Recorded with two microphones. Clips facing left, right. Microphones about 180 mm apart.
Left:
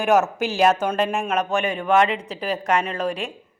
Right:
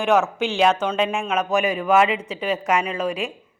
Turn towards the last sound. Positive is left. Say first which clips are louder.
# even
turn(degrees=-5)  # may be behind; listen again after turning